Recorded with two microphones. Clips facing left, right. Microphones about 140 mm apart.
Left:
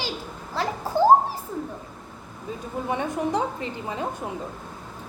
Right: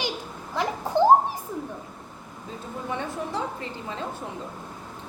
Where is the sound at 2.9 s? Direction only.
15° left (ahead or behind).